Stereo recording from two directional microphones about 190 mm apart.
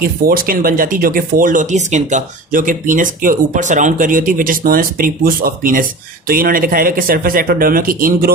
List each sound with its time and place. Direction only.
0.0 s speech: 50° right (ahead or behind)